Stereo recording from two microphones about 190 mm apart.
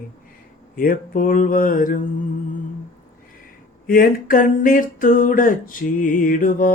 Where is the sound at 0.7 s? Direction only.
45° left (ahead or behind).